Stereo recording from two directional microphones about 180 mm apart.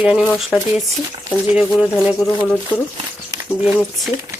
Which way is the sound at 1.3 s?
25° right (ahead or behind).